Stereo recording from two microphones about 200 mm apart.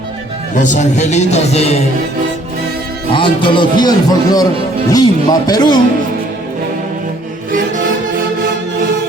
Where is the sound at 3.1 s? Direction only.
25° left (ahead or behind).